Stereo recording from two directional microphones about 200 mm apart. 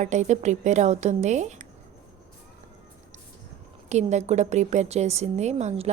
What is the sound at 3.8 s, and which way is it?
A woman's voice, 35° right (ahead or behind).